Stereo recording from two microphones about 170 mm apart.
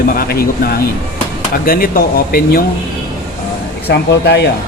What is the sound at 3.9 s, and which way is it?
Speech, 75° left (ahead or behind).